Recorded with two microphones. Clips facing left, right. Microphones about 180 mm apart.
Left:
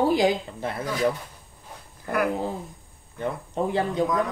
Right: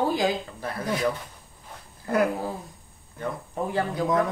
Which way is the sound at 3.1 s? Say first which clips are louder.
Left 3 dB; 20° left (ahead or behind).